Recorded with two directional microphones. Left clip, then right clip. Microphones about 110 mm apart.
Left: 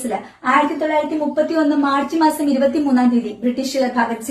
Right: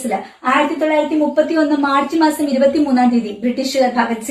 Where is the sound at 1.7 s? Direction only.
15° left (ahead or behind).